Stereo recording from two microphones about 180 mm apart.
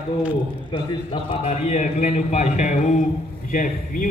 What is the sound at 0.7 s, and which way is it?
A man's voice, 30° left (ahead or behind).